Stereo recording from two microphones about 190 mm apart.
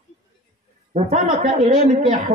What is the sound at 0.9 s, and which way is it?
Speech, 40° right (ahead or behind).